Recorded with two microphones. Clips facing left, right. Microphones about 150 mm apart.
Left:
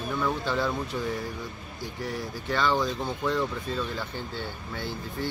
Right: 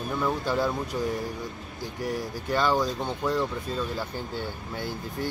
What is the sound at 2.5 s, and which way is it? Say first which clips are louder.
Speech: right 1 dB; 10° right (ahead or behind).